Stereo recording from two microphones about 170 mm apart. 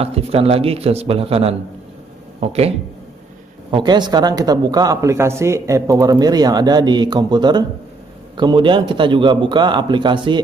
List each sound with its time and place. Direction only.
0.0 s a man's voice: 35° right (ahead or behind)
3.7 s speech: 25° right (ahead or behind)